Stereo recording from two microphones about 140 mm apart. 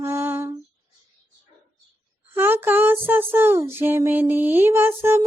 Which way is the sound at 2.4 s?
15° right (ahead or behind).